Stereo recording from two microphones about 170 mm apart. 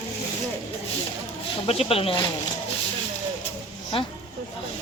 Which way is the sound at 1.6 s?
35° left (ahead or behind).